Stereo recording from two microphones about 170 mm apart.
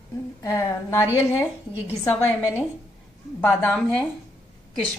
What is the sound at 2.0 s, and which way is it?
A woman's voice, 15° left (ahead or behind).